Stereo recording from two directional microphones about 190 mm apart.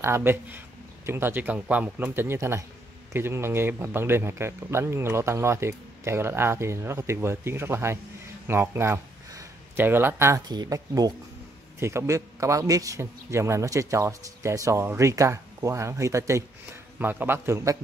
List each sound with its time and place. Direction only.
0.0 s speech: 15° right (ahead or behind)